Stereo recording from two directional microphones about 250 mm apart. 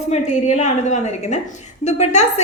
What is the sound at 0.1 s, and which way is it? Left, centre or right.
A woman's voice, left.